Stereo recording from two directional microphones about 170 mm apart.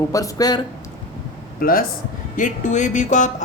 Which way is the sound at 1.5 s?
60° left (ahead or behind).